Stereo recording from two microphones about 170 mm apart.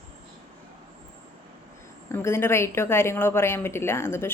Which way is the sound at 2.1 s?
15° left (ahead or behind).